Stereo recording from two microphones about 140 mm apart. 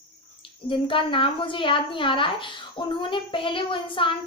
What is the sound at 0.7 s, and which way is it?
Speech, 35° left (ahead or behind).